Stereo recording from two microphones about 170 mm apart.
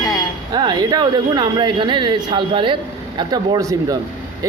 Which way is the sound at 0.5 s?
25° right (ahead or behind).